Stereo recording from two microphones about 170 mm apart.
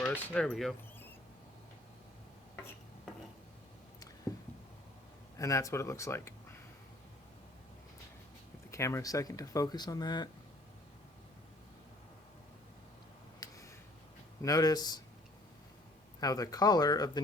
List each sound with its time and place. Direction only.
0.0 s speech: 5° left (ahead or behind)
5.4 s speech: 20° left (ahead or behind)
8.7 s speech: 15° left (ahead or behind)
13.4 s a sound: 20° left (ahead or behind)
14.4 s speech: 20° left (ahead or behind)
16.2 s speech: 20° left (ahead or behind)